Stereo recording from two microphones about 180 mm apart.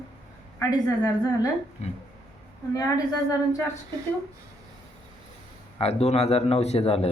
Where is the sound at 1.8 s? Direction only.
40° left (ahead or behind).